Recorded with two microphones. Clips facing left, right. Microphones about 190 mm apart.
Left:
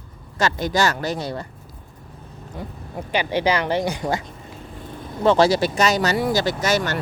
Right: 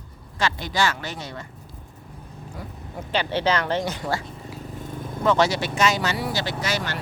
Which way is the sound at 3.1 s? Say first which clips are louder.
Left 2 dB; 10° left (ahead or behind).